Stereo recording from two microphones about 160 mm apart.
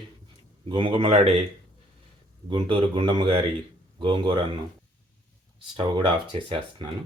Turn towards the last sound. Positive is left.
turn(degrees=-30)  # may be behind; listen again after turning